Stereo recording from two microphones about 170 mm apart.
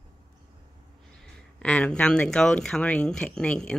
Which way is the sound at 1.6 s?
5° left (ahead or behind).